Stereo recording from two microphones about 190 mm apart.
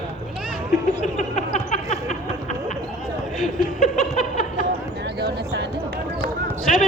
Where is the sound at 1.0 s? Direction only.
40° left (ahead or behind).